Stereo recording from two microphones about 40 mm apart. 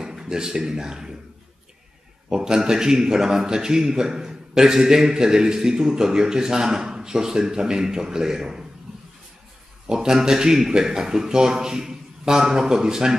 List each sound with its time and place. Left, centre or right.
0.0 s speech: centre
2.2 s a man's voice: centre
9.8 s a man's voice: centre